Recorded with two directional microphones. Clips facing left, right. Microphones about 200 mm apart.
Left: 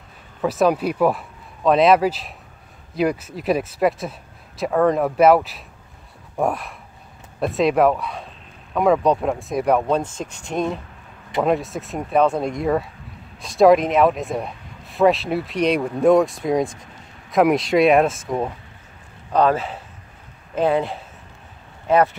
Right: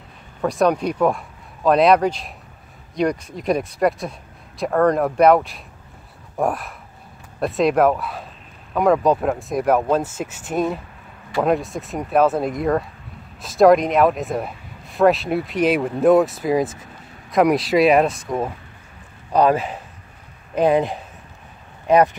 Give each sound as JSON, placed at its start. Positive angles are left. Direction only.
{"t": 0.4, "sound": "speech", "side_deg": 5}
{"t": 19.3, "sound": "speech", "side_deg": -15}